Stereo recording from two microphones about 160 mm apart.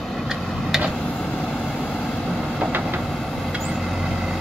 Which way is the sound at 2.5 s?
10° right (ahead or behind).